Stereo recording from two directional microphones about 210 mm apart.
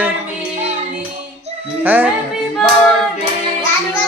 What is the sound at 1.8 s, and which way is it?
Speech, 10° right (ahead or behind).